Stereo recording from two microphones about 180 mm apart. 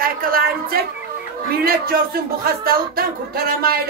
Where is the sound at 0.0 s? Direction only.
55° right (ahead or behind).